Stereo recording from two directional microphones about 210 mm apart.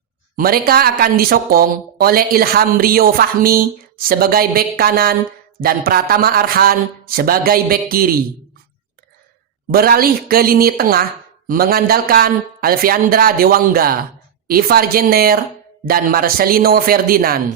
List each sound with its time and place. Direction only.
0.3 s speech: 45° right (ahead or behind)
9.7 s speech: 45° right (ahead or behind)